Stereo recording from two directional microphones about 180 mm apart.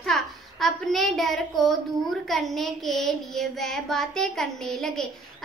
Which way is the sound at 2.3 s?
Centre (ahead or behind).